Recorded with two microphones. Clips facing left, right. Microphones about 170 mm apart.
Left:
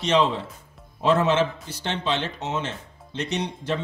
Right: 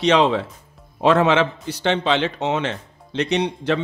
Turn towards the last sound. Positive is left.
turn(degrees=-70)  # may be behind; listen again after turning